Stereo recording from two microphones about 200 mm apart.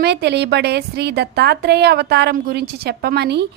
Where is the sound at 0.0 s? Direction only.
55° right (ahead or behind).